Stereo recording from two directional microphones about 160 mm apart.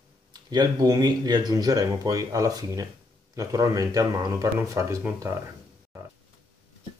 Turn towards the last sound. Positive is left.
turn(degrees=-15)  # may be behind; listen again after turning